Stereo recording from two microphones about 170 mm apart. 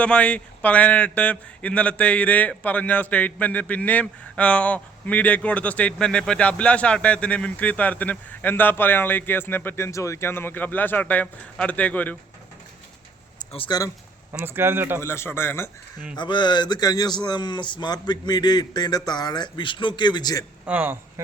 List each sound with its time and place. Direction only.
0.0 s a man's voice: 5° left (ahead or behind)
13.5 s a man's voice: 30° left (ahead or behind)
14.3 s speech: 10° right (ahead or behind)
15.0 s a man's voice: 15° left (ahead or behind)
16.1 s a man's voice: 25° left (ahead or behind)
20.7 s speech: 10° right (ahead or behind)